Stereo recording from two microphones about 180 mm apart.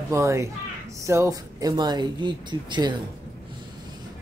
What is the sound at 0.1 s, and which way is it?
Speech, 15° right (ahead or behind).